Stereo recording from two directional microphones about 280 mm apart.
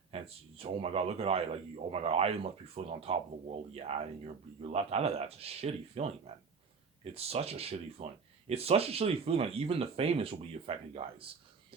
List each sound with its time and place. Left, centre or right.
0.1 s speech: right